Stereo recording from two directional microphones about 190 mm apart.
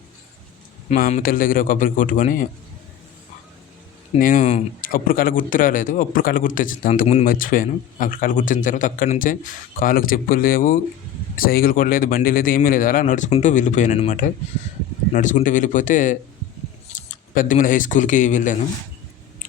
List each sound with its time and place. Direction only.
0.9 s speech: 45° left (ahead or behind)
4.2 s speech: 45° left (ahead or behind)